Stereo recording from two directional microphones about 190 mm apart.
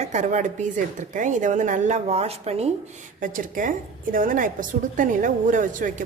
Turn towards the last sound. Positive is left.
turn(degrees=-45)  # may be behind; listen again after turning